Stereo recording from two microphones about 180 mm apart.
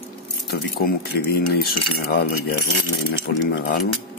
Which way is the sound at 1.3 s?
60° left (ahead or behind).